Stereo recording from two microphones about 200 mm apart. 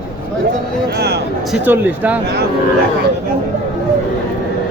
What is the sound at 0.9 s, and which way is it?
Speech, 55° right (ahead or behind).